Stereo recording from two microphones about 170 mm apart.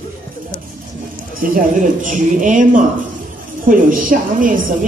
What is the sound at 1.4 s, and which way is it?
A woman's voice, 55° right (ahead or behind).